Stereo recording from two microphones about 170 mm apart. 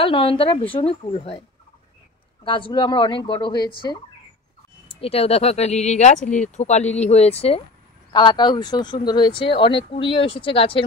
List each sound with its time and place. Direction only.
0.0 s speech: 30° left (ahead or behind)
2.4 s speech: 30° left (ahead or behind)
5.0 s speech: 35° left (ahead or behind)